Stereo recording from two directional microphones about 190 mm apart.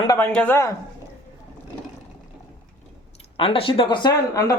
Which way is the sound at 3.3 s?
30° left (ahead or behind).